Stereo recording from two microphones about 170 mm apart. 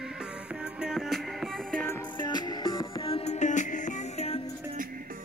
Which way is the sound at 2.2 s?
25° left (ahead or behind).